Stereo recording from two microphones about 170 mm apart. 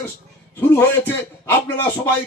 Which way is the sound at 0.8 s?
15° left (ahead or behind).